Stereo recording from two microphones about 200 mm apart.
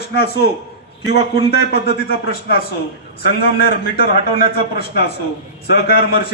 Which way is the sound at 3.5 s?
50° left (ahead or behind).